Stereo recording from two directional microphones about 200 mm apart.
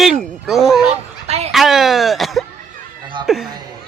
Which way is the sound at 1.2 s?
35° right (ahead or behind).